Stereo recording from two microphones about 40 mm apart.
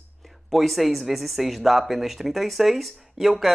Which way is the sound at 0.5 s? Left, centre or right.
Centre.